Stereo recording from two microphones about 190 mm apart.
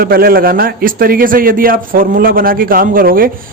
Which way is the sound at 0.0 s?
50° right (ahead or behind).